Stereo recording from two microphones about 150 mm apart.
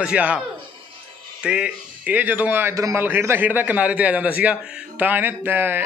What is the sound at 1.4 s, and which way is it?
A man's voice, 5° right (ahead or behind).